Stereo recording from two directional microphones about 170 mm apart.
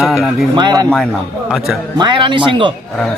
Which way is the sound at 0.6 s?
25° right (ahead or behind).